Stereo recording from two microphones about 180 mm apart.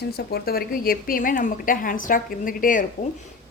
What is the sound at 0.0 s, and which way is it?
A woman's voice, 65° left (ahead or behind).